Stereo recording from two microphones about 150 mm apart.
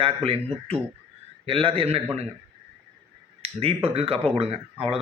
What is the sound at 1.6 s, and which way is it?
Speech, 40° right (ahead or behind).